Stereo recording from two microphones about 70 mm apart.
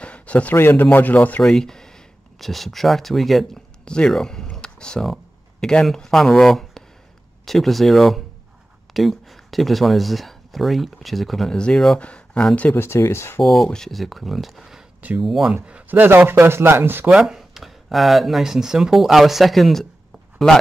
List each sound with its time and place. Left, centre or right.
0.0 s a sound: centre
0.6 s speech: left
1.4 s speech: centre
3.8 s speech: centre
12.0 s speech: centre
12.7 s speech: left
13.4 s speech: centre
15.9 s speech: right
17.1 s speech: centre